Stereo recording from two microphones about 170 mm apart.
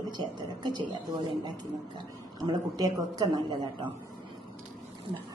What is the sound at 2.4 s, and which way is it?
A woman's voice, 25° right (ahead or behind).